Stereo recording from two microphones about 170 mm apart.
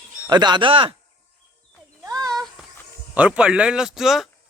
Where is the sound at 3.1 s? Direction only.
5° right (ahead or behind).